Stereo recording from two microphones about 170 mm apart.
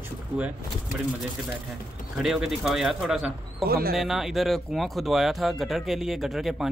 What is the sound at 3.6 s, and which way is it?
Speech, 65° right (ahead or behind).